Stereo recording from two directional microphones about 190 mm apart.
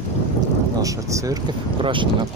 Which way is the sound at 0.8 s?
15° right (ahead or behind).